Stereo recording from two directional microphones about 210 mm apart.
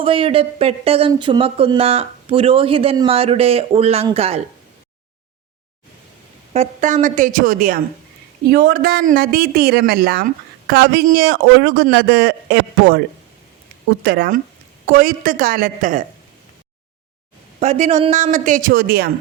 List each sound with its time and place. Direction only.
0.0 s speech: 25° right (ahead or behind)
6.5 s a man's voice: 35° right (ahead or behind); by 13.0 s 55° right (ahead or behind)
14.0 s a man's voice: 50° right (ahead or behind)
17.6 s a man's voice: 35° right (ahead or behind)